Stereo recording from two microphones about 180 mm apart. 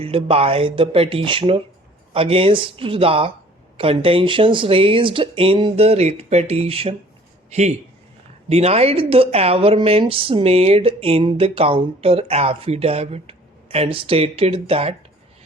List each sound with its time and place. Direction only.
0.0 s speech: 30° right (ahead or behind)